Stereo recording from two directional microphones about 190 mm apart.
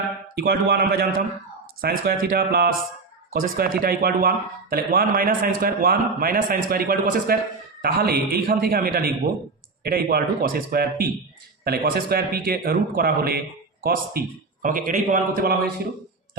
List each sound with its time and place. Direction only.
0.3 s a man's voice: 55° right (ahead or behind)